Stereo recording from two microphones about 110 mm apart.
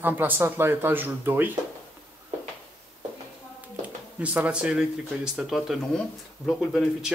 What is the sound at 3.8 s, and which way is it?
Speech, 10° right (ahead or behind).